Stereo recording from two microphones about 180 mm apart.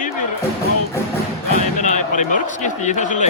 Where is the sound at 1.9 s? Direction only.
40° left (ahead or behind).